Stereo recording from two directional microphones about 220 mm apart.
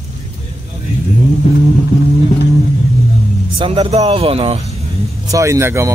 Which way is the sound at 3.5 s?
25° right (ahead or behind).